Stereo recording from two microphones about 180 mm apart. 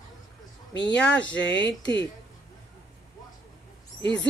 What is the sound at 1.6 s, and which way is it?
Speech, 80° left.